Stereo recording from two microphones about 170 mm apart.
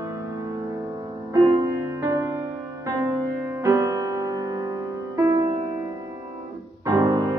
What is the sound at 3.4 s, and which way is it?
Music, 15° right (ahead or behind).